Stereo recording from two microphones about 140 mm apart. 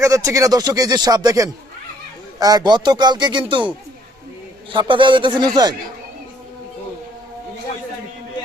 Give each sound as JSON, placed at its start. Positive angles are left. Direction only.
{"t": 0.0, "sound": "speech", "side_deg": -25}
{"t": 4.7, "sound": "speech", "side_deg": -35}